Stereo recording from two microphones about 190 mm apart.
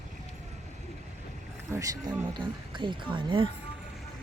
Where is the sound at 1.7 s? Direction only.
20° right (ahead or behind).